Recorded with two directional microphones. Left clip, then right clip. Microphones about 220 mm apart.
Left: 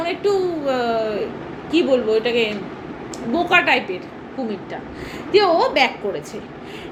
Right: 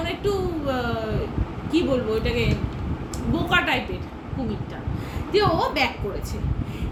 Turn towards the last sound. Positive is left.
turn(degrees=-15)  # may be behind; listen again after turning